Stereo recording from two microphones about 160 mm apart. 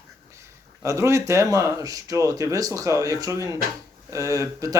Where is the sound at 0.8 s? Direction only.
20° right (ahead or behind).